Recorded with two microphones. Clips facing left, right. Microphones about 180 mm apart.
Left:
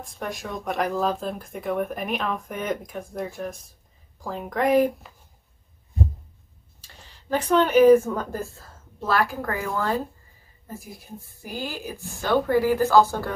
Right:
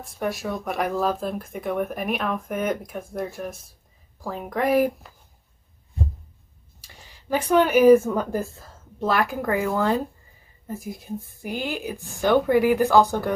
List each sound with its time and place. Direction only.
0.0 s speech: 5° right (ahead or behind)
6.8 s a sound: 10° right (ahead or behind)
8.1 s a woman's voice: 10° right (ahead or behind)